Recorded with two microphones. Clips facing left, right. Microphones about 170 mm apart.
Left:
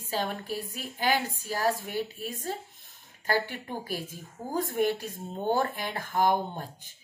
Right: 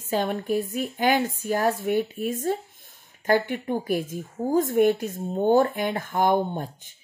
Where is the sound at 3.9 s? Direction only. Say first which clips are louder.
Right 10 dB; 50° right (ahead or behind).